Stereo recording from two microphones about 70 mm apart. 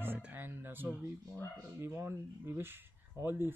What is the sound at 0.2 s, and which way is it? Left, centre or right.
Music, right.